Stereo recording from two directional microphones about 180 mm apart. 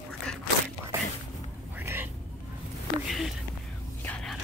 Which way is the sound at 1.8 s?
10° right (ahead or behind).